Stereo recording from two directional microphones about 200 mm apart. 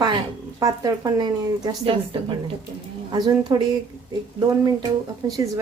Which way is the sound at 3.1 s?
20° right (ahead or behind).